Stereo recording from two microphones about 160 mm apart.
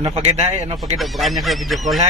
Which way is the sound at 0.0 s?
35° right (ahead or behind).